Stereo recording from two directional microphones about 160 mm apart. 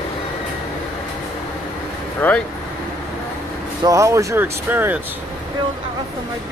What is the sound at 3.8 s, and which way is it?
Speech, 20° right (ahead or behind).